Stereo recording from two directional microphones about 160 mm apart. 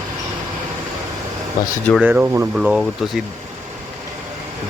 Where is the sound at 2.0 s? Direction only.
5° right (ahead or behind).